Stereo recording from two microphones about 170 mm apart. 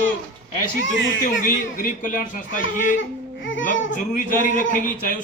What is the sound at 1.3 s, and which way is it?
A man's voice, 50° left (ahead or behind).